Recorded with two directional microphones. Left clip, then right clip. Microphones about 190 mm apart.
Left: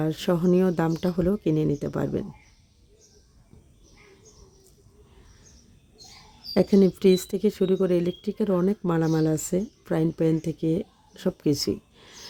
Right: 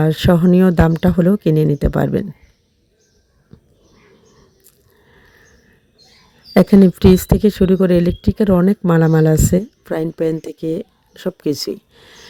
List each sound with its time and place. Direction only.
0.0 s speech: 40° right (ahead or behind)
6.5 s speech: 40° right (ahead or behind)